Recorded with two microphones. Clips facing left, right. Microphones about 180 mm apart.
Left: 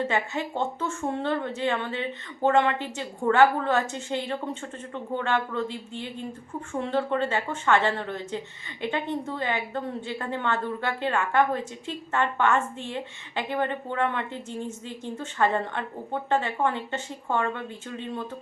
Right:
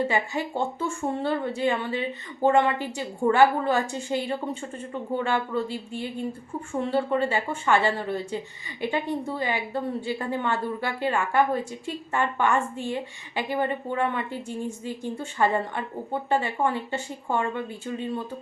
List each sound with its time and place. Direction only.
0.0 s a woman's voice: 10° right (ahead or behind)